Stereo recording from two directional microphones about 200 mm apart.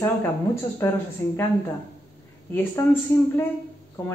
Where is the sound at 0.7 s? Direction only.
10° left (ahead or behind).